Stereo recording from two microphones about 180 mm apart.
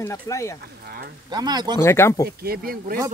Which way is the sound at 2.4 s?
55° right (ahead or behind).